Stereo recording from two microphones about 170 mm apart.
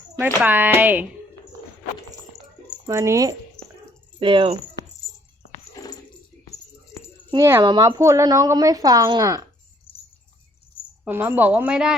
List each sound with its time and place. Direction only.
0.3 s a woman's voice: 10° right (ahead or behind)
2.8 s a woman's voice: 15° right (ahead or behind)
4.2 s a woman's voice: 30° right (ahead or behind)
5.8 s a sound: 20° left (ahead or behind)
7.3 s a woman's voice: 20° right (ahead or behind)
9.9 s bird: 35° left (ahead or behind)
11.0 s a woman's voice: 10° right (ahead or behind)